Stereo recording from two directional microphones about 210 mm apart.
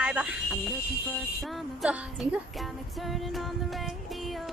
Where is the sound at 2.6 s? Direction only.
Centre (ahead or behind).